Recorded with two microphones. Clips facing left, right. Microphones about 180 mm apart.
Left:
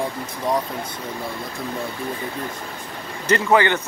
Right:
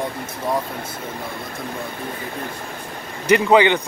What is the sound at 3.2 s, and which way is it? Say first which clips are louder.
Speech: right 3 dB; 15° right (ahead or behind).